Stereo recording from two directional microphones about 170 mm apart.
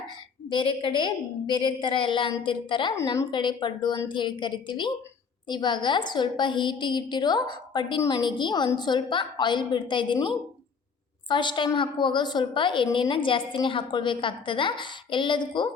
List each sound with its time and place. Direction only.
0.5 s a woman's voice: 30° left (ahead or behind)